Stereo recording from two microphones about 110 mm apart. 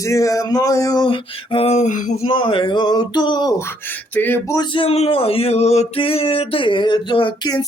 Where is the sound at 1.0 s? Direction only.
55° left (ahead or behind); by 1.9 s 80° left.